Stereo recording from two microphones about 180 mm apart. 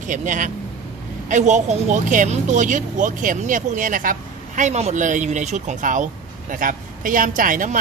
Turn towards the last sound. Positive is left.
turn(degrees=-50)  # may be behind; listen again after turning